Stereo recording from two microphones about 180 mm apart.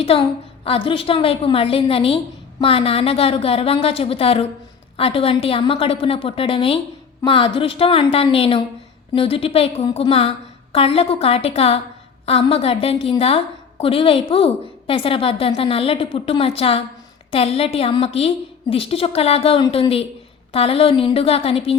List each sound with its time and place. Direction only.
0.0 s a woman's voice: 30° left (ahead or behind)